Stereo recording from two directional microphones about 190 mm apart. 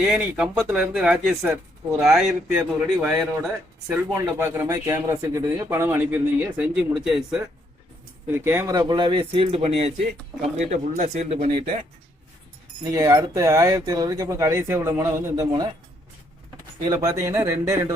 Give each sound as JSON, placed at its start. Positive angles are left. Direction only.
{"t": 0.0, "sound": "speech", "side_deg": -10}
{"t": 8.3, "sound": "speech", "side_deg": -10}
{"t": 12.8, "sound": "speech", "side_deg": -15}
{"t": 16.8, "sound": "speech", "side_deg": -20}